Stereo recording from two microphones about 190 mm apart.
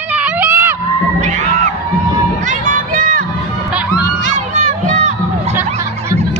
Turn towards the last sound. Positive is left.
turn(degrees=-40)  # may be behind; listen again after turning